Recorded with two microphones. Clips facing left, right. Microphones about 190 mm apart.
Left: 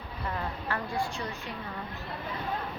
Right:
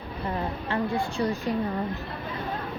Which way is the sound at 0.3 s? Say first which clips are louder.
Right 4 dB; 25° right (ahead or behind).